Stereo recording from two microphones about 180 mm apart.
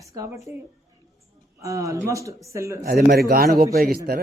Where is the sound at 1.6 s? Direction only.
15° right (ahead or behind).